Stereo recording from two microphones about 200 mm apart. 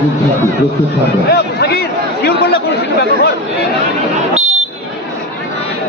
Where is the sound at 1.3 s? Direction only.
50° left (ahead or behind).